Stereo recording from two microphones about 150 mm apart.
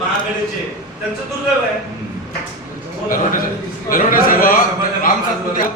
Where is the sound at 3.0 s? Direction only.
65° left (ahead or behind).